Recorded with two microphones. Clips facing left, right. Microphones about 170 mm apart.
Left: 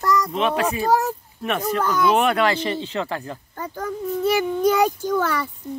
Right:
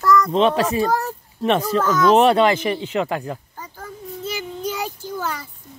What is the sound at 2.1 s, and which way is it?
Speech, 30° right (ahead or behind).